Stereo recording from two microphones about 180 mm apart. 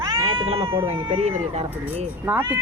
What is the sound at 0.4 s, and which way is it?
Speech, 35° right (ahead or behind).